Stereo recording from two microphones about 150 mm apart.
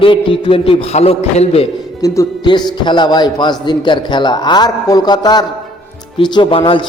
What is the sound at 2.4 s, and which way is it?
A man's voice, 30° left (ahead or behind).